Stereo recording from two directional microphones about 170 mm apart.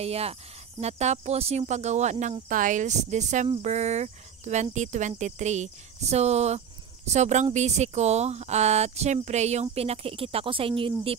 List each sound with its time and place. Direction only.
0.0 s speech: 35° right (ahead or behind)